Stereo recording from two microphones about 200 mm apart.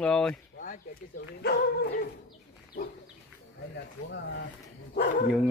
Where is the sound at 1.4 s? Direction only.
50° left (ahead or behind).